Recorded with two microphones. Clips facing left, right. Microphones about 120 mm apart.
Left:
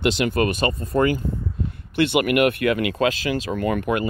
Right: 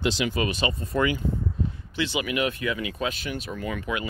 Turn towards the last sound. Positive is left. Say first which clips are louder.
# left 8 dB
turn(degrees=55)  # may be behind; listen again after turning